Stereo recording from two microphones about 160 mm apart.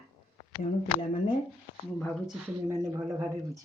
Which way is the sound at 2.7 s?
20° right (ahead or behind).